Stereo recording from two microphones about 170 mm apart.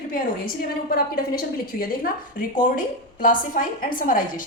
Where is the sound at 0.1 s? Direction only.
55° left (ahead or behind).